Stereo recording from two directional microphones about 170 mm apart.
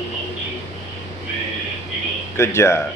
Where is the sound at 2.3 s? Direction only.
15° left (ahead or behind).